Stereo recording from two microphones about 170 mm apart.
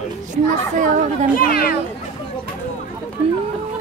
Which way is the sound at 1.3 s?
55° left (ahead or behind).